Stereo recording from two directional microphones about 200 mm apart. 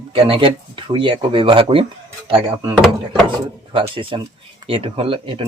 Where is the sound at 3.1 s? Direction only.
25° right (ahead or behind).